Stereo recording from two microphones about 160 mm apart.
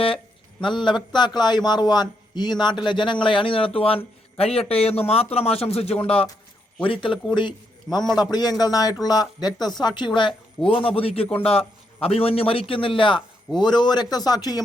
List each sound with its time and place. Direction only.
0.6 s a man's voice: 30° left (ahead or behind)